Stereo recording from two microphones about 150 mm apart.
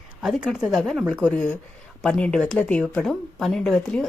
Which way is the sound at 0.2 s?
5° right (ahead or behind).